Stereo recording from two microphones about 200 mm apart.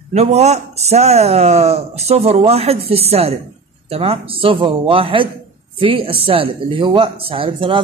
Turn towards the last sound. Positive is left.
turn(degrees=-25)  # may be behind; listen again after turning